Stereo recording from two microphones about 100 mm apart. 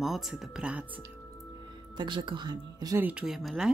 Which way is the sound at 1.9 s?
50° right (ahead or behind).